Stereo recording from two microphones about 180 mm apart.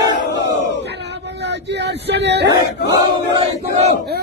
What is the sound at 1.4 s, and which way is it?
Speech, 70° right (ahead or behind).